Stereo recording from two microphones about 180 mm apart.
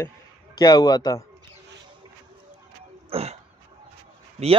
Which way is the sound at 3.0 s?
35° right (ahead or behind).